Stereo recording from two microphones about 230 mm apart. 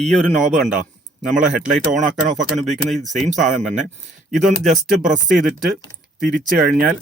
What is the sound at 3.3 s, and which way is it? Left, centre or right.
Speech, right.